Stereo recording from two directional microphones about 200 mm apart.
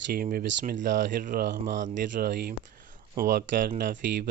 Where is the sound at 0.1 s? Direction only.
45° right (ahead or behind).